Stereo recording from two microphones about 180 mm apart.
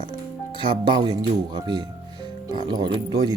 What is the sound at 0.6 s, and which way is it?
Speech, 25° right (ahead or behind).